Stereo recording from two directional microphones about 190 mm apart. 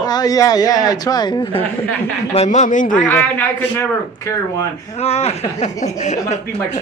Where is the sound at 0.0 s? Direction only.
20° left (ahead or behind).